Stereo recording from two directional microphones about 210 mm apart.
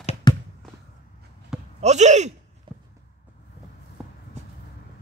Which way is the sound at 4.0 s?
Centre (ahead or behind).